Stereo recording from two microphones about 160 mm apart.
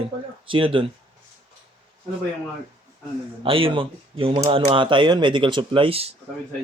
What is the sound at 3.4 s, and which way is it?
Speech, 35° right (ahead or behind).